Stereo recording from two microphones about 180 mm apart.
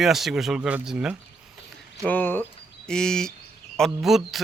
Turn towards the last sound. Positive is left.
turn(degrees=0)  # may be behind; listen again after turning